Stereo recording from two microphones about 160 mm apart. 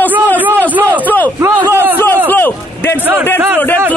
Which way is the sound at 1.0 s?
10° left (ahead or behind).